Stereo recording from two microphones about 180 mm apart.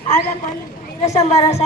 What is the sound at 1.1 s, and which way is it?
Speech, 35° left (ahead or behind).